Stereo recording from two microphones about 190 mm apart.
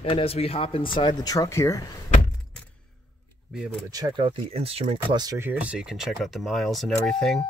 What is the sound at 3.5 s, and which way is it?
Speech, 5° right (ahead or behind).